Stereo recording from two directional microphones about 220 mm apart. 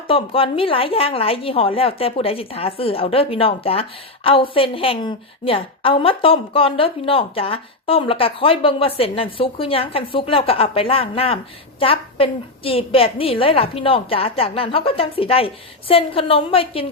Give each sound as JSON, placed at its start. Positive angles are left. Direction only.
{"t": 0.1, "sound": "a woman's voice", "side_deg": 25}